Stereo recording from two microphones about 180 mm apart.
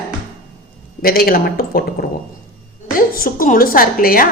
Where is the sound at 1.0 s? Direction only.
55° left (ahead or behind).